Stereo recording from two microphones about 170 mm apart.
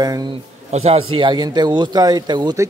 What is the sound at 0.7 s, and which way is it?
A man's voice, 40° right (ahead or behind).